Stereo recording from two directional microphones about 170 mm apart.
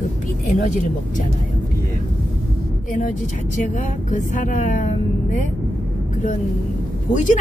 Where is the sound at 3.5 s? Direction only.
45° left (ahead or behind).